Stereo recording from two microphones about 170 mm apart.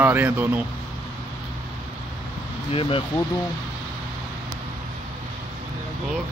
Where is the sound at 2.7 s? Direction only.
30° left (ahead or behind).